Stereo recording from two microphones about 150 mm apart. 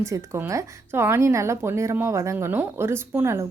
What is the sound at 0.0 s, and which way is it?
A woman's voice, 20° right (ahead or behind).